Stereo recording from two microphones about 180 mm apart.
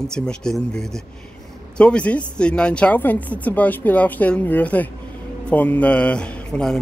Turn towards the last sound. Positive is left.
turn(degrees=5)  # may be behind; listen again after turning